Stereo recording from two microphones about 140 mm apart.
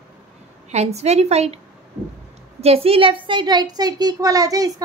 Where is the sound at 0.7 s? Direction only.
50° right (ahead or behind).